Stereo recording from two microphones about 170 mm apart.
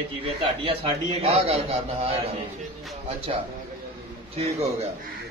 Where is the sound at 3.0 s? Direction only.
35° right (ahead or behind).